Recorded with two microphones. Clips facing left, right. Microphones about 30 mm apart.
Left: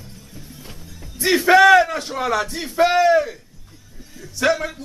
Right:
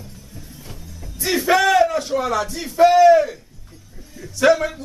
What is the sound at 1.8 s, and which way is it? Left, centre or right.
Speech, left.